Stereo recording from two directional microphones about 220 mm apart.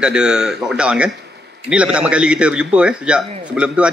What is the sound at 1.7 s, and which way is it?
A man's voice, 5° right (ahead or behind).